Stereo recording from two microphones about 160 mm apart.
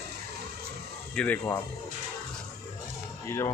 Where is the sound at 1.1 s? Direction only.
5° left (ahead or behind).